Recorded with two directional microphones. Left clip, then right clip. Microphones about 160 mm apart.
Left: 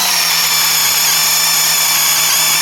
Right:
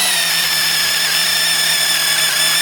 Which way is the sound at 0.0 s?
25° right (ahead or behind).